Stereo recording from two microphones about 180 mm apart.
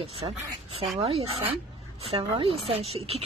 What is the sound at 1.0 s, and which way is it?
Speech, 35° right (ahead or behind).